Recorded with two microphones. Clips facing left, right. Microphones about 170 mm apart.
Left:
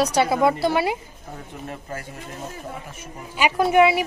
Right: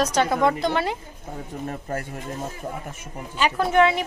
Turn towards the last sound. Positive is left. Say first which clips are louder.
# left 2 dB
turn(degrees=10)  # may be behind; listen again after turning